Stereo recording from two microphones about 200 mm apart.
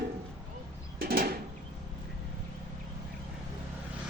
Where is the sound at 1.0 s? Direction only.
50° right (ahead or behind).